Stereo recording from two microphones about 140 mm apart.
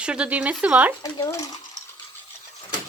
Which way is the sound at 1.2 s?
20° left (ahead or behind).